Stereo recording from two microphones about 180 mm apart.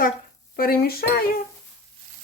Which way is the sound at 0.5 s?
55° left (ahead or behind).